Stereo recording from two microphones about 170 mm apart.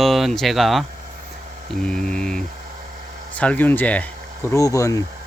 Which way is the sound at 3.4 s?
10° left (ahead or behind).